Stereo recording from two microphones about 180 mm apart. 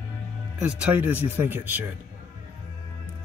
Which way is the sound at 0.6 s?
5° right (ahead or behind).